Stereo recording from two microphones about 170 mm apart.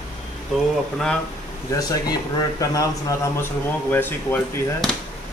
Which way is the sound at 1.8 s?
25° left (ahead or behind).